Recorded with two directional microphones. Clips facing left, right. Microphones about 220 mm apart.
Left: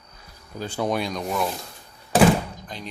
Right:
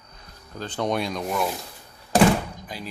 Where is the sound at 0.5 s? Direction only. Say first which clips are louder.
Left 1 dB; 10° left (ahead or behind).